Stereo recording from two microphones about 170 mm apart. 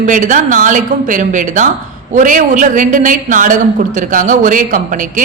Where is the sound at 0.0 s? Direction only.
50° right (ahead or behind).